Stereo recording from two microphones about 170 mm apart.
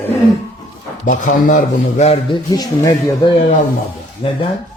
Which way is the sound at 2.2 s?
25° left (ahead or behind).